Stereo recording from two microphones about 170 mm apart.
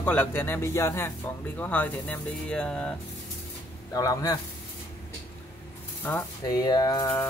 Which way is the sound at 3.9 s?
20° left (ahead or behind).